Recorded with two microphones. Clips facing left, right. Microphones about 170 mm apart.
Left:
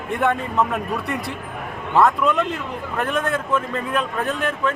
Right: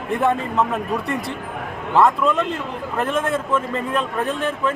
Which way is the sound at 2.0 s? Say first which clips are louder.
Right 1 dB; centre (ahead or behind).